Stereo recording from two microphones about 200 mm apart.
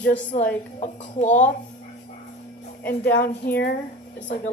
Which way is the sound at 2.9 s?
45° left (ahead or behind).